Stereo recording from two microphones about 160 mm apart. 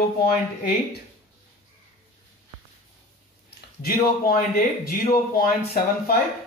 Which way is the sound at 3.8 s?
65° left (ahead or behind).